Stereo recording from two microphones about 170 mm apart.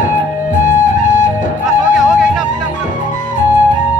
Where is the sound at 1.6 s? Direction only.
Centre (ahead or behind).